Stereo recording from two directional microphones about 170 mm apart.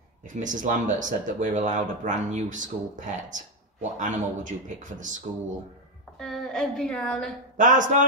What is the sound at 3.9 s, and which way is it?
Speech, 50° right (ahead or behind).